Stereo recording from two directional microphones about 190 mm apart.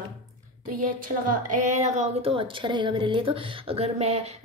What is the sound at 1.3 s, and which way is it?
A woman's voice, 40° right (ahead or behind).